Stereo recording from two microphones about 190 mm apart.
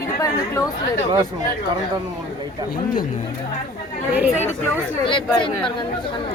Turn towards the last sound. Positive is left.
turn(degrees=25)  # may be behind; listen again after turning